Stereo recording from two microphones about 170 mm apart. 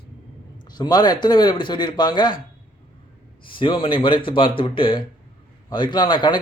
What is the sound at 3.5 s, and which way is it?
A man's voice, 30° left (ahead or behind).